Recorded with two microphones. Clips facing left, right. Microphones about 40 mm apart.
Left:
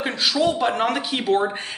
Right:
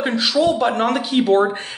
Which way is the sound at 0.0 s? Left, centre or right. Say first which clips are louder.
Right 3 dB; centre.